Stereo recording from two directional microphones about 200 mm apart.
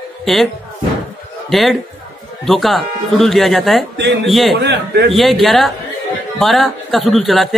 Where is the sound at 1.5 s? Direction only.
Centre (ahead or behind).